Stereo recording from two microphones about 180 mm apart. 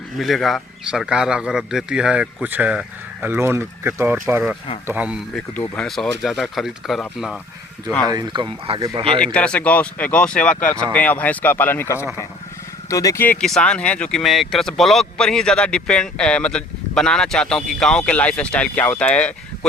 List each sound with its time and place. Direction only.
0.2 s speech: centre (ahead or behind)
5.5 s speech: 5° left (ahead or behind)
8.0 s speech: 20° right (ahead or behind)
9.2 s speech: 5° left (ahead or behind)